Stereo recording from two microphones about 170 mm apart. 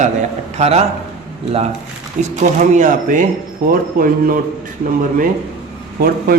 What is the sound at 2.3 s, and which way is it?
A man's voice, 50° right (ahead or behind).